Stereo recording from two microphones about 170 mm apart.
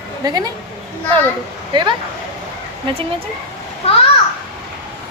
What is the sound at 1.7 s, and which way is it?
Speech, 25° right (ahead or behind).